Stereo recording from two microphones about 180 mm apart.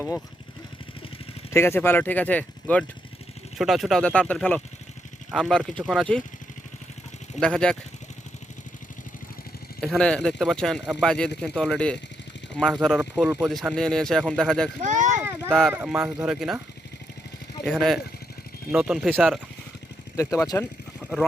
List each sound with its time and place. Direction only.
1.5 s speech: 15° left (ahead or behind)
7.3 s speech: 5° left (ahead or behind)
9.8 s speech: 5° left (ahead or behind)
14.8 s a sound: 45° right (ahead or behind)
15.2 s a sound: 10° right (ahead or behind)
15.7 s speech: 5° right (ahead or behind)
17.7 s speech: centre (ahead or behind)
20.1 s speech: 15° left (ahead or behind)
21.0 s a sound: centre (ahead or behind)